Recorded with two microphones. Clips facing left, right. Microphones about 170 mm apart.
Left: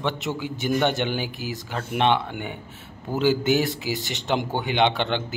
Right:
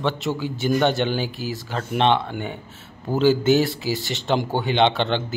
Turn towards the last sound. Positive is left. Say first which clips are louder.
# right 2 dB
turn(degrees=15)  # may be behind; listen again after turning